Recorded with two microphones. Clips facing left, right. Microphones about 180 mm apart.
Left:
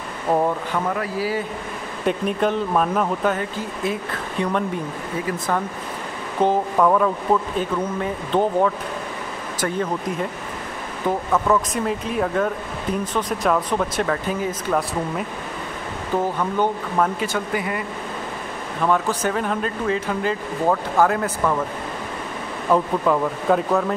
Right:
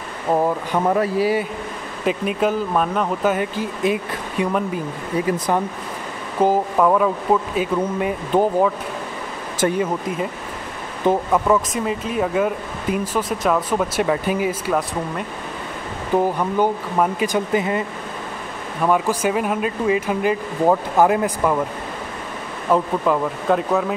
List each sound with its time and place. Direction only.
0.3 s speech: centre (ahead or behind)
0.8 s speech: 30° right (ahead or behind)
2.0 s speech: 5° right (ahead or behind)
3.3 s speech: 15° right (ahead or behind)
6.4 s speech: 5° right (ahead or behind)
9.6 s speech: 25° right (ahead or behind)
11.1 s speech: 10° right (ahead or behind)
16.2 s speech: 10° right (ahead or behind)
18.8 s speech: 10° right (ahead or behind)
22.7 s speech: centre (ahead or behind)